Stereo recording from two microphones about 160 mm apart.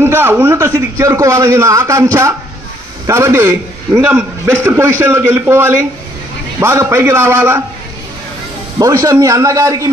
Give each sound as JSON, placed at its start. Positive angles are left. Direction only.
{"t": 0.0, "sound": "a man's voice", "side_deg": -15}
{"t": 8.7, "sound": "a man's voice", "side_deg": -20}